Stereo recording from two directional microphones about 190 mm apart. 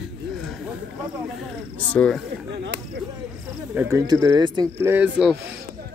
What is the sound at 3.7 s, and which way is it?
Speech, 10° right (ahead or behind).